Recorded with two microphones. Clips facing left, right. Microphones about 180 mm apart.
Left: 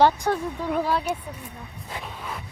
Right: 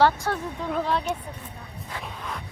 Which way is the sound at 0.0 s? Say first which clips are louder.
Left 2 dB; 15° left (ahead or behind).